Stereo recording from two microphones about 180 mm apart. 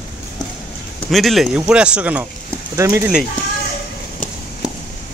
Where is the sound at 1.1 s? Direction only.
Centre (ahead or behind).